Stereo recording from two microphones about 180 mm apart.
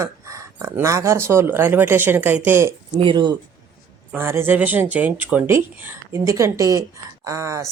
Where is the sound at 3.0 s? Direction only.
25° right (ahead or behind).